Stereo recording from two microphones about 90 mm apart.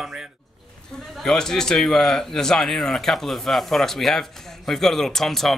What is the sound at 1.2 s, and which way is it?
A man's voice, 5° left (ahead or behind).